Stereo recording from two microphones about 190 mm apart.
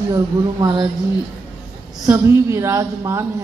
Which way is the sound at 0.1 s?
20° right (ahead or behind).